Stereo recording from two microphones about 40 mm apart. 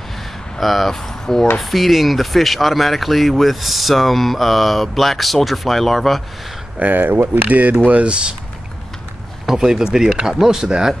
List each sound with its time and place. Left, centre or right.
0.6 s speech: centre
1.6 s speech: centre
6.8 s speech: right
9.5 s speech: centre